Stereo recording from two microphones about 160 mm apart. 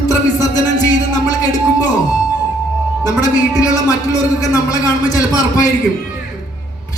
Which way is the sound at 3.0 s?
20° left (ahead or behind).